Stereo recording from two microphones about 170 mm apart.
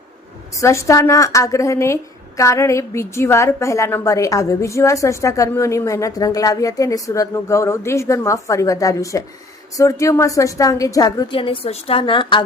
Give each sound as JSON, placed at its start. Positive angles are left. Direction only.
{"t": 0.5, "sound": "a woman's voice", "side_deg": 15}